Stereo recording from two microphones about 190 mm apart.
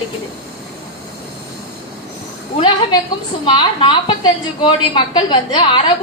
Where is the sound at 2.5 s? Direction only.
25° left (ahead or behind).